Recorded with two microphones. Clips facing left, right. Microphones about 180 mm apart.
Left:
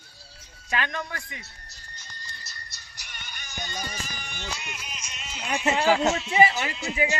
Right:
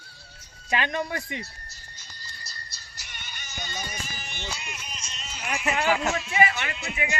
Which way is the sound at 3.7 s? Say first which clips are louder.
Left 1 dB; 10° right (ahead or behind).